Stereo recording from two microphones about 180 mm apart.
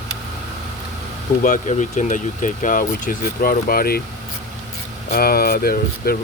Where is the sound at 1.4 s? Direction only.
45° left (ahead or behind).